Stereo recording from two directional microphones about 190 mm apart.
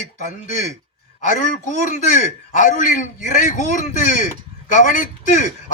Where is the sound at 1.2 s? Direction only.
40° left (ahead or behind).